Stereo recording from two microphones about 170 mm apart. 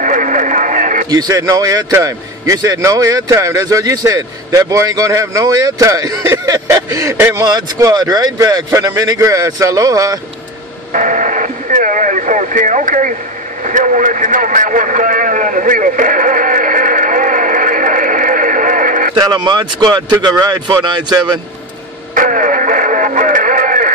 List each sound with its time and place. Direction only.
0.0 s radio: 50° right (ahead or behind)
1.1 s a man's voice: 20° right (ahead or behind)
10.9 s radio: 50° right (ahead or behind)
13.7 s vehicle: 50° right (ahead or behind)
19.1 s a man's voice: 25° right (ahead or behind)
22.1 s music: 50° right (ahead or behind)